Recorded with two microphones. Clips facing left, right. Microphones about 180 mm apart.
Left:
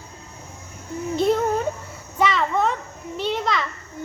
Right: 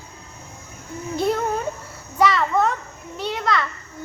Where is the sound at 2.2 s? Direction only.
Centre (ahead or behind).